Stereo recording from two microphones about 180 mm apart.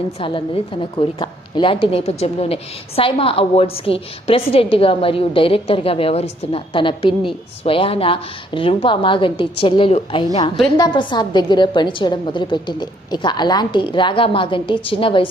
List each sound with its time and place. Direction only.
0.2 s a woman's voice: 30° left (ahead or behind)